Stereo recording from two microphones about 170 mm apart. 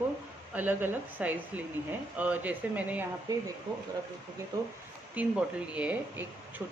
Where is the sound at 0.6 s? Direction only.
10° right (ahead or behind).